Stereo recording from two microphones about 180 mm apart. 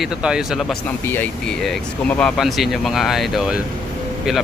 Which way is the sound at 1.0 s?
10° left (ahead or behind).